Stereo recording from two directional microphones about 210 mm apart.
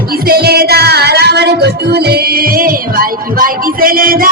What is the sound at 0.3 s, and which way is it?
Music, 50° right (ahead or behind).